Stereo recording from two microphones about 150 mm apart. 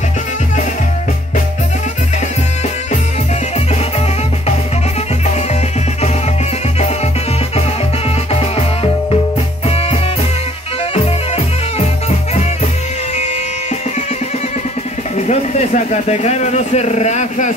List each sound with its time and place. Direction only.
8.3 s music: 40° left (ahead or behind)
11.3 s music: 45° left (ahead or behind)
15.1 s speech: 50° left (ahead or behind)